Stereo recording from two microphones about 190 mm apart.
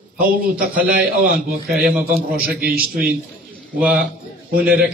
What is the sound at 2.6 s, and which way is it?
Speech, 50° right (ahead or behind).